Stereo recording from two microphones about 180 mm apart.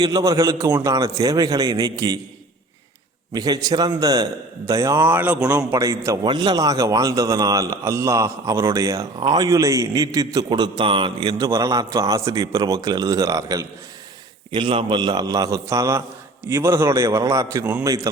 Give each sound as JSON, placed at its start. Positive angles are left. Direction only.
{"t": 0.0, "sound": "a man's voice", "side_deg": -20}
{"t": 3.3, "sound": "a man's voice", "side_deg": -20}
{"t": 14.5, "sound": "a man's voice", "side_deg": -30}